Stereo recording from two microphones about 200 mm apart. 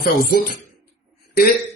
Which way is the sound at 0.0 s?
45° left (ahead or behind).